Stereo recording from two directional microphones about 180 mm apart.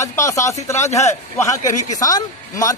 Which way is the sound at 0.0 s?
15° left (ahead or behind).